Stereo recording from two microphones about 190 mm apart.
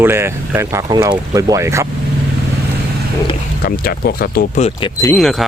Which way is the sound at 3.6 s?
50° left (ahead or behind).